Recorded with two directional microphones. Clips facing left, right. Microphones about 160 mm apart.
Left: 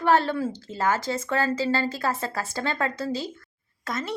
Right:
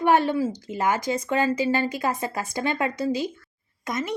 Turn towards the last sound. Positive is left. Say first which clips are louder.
# right 2 dB
turn(degrees=-15)  # may be behind; listen again after turning